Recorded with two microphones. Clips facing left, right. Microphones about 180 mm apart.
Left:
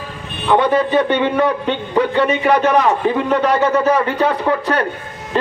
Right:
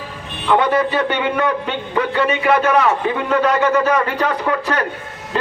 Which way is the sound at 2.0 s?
35° left (ahead or behind).